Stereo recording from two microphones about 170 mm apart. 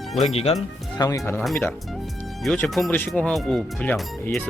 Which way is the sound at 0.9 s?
20° left (ahead or behind).